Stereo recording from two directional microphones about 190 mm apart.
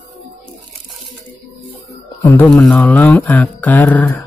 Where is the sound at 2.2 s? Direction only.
10° left (ahead or behind).